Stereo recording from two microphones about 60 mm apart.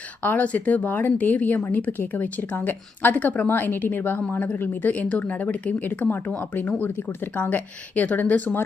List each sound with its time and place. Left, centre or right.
0.2 s speech: left